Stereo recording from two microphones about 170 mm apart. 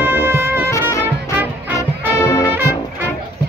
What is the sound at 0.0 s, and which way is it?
Music, 15° right (ahead or behind).